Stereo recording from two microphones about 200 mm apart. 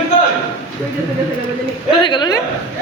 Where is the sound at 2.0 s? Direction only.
25° left (ahead or behind).